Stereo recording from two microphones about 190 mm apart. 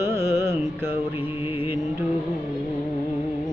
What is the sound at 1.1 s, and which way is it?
Music, 10° right (ahead or behind).